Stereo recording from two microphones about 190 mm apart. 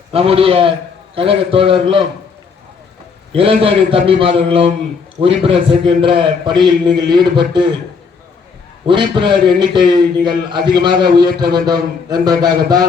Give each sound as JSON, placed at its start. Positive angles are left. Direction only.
{"t": 0.1, "sound": "a man's voice", "side_deg": -30}
{"t": 3.3, "sound": "a man's voice", "side_deg": -30}
{"t": 8.9, "sound": "a man's voice", "side_deg": -25}